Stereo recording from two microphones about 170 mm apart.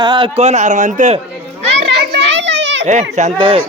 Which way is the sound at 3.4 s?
30° right (ahead or behind).